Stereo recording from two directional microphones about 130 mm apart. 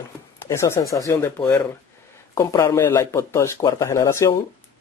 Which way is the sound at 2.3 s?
25° left (ahead or behind).